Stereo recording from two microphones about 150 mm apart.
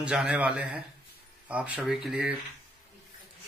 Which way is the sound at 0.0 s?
5° right (ahead or behind).